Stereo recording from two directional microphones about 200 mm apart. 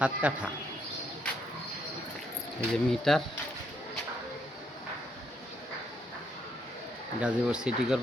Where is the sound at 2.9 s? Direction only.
Centre (ahead or behind).